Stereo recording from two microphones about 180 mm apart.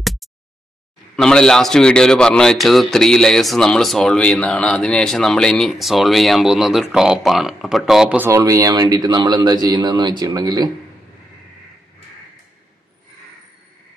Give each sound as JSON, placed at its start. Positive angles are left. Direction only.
{"t": 0.0, "sound": "a sound", "side_deg": 0}
{"t": 1.1, "sound": "a man's voice", "side_deg": 5}
{"t": 8.3, "sound": "a man's voice", "side_deg": -20}